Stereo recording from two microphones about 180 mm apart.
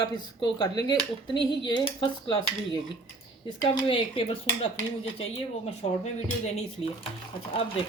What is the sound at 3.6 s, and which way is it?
Speech, 25° left (ahead or behind).